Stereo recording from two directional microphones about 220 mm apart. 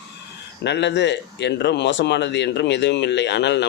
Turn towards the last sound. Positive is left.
turn(degrees=50)  # may be behind; listen again after turning